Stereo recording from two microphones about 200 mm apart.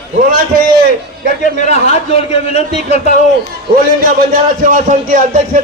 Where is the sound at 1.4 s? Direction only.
35° left (ahead or behind).